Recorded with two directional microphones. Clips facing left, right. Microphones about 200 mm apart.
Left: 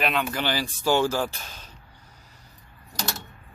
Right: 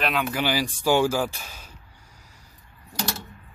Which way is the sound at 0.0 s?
5° right (ahead or behind).